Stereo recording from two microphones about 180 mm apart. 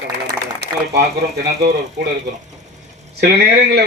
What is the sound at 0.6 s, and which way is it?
Speech, 70° right (ahead or behind).